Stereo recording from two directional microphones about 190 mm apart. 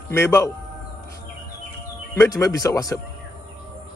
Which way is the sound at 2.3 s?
20° left (ahead or behind).